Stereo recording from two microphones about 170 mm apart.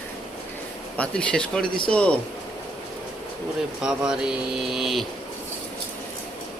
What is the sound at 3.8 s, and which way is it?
Speech, 5° right (ahead or behind).